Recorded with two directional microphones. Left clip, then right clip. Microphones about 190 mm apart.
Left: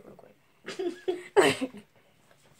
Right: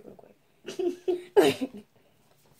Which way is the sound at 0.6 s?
20° right (ahead or behind).